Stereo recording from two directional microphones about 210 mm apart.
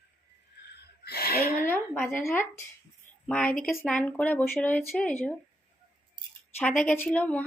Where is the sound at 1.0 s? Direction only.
50° left (ahead or behind).